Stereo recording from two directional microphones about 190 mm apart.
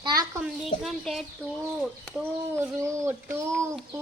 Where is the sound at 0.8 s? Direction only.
Centre (ahead or behind).